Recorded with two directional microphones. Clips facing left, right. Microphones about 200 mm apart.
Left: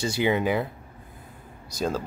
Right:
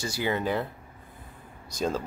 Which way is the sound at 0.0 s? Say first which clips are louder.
Left 5 dB; 20° left (ahead or behind).